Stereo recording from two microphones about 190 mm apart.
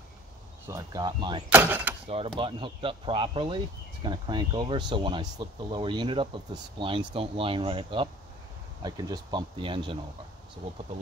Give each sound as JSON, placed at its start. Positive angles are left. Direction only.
{"t": 0.7, "sound": "speech", "side_deg": -15}
{"t": 1.5, "sound": "speech", "side_deg": -10}
{"t": 2.0, "sound": "speech", "side_deg": -30}